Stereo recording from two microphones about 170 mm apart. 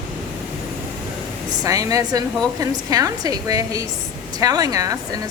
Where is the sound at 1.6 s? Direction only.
20° right (ahead or behind).